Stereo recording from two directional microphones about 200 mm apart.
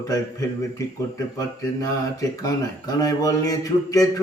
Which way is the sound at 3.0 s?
20° left (ahead or behind).